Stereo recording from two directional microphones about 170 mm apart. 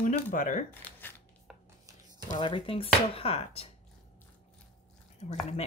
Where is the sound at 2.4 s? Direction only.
30° left (ahead or behind).